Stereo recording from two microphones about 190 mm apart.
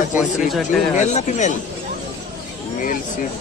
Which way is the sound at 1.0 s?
40° left (ahead or behind).